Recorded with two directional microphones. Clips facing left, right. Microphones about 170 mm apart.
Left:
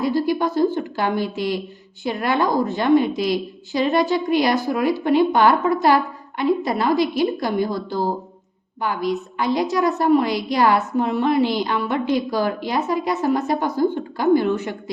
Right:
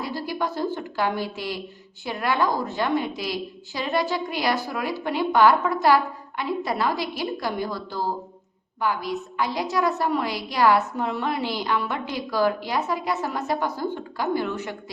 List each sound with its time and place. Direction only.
0.0 s a woman's voice: 20° left (ahead or behind)